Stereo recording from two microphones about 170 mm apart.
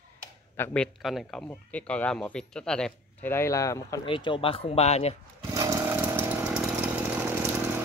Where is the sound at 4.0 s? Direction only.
30° left (ahead or behind).